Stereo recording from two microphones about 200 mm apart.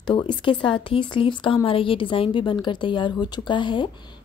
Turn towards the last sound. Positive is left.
turn(degrees=25)  # may be behind; listen again after turning